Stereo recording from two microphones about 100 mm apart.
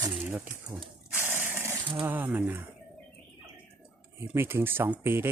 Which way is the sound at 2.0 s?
20° right (ahead or behind).